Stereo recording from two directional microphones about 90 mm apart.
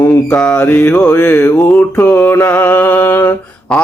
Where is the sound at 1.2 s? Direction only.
20° left (ahead or behind).